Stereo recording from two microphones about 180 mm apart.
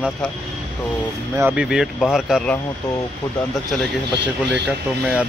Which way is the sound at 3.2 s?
20° left (ahead or behind).